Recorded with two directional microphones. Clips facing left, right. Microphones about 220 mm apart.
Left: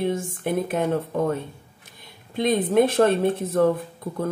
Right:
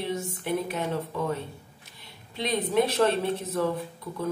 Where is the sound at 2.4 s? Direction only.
50° left (ahead or behind).